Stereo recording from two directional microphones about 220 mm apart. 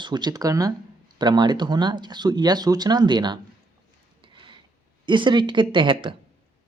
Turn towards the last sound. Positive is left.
turn(degrees=-25)  # may be behind; listen again after turning